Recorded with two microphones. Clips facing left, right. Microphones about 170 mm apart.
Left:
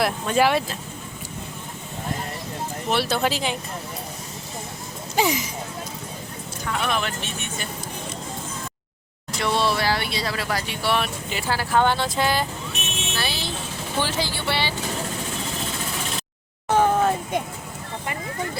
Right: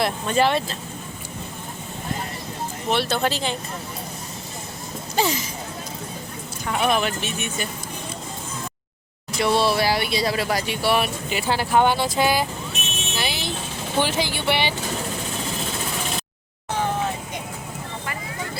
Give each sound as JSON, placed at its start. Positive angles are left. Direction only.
{"t": 0.0, "sound": "speech", "side_deg": 5}
{"t": 2.9, "sound": "speech", "side_deg": 5}
{"t": 5.1, "sound": "speech", "side_deg": 15}
{"t": 6.7, "sound": "speech", "side_deg": -15}
{"t": 9.4, "sound": "speech", "side_deg": -10}
{"t": 13.1, "sound": "vehicle", "side_deg": -15}
{"t": 14.0, "sound": "speech", "side_deg": -15}
{"t": 16.7, "sound": "vehicle", "side_deg": 50}